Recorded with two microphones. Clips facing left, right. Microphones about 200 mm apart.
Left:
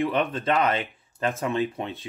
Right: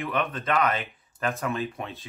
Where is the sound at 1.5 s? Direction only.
15° left (ahead or behind).